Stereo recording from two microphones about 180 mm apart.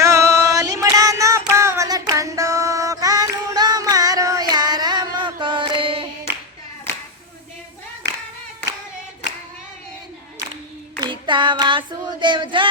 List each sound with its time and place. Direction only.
0.0 s music: 15° right (ahead or behind)
11.0 s child singing: 25° right (ahead or behind)